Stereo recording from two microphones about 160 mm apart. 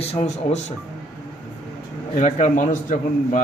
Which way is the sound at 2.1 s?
50° left (ahead or behind).